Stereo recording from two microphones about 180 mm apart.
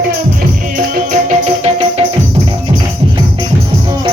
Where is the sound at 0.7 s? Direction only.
45° right (ahead or behind).